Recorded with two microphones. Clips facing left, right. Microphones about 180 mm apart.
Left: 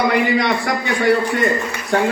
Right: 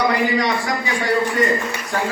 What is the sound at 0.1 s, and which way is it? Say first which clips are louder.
A man's voice: left 2 dB; 60° left (ahead or behind).